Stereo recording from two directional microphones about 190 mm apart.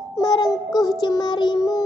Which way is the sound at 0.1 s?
20° left (ahead or behind).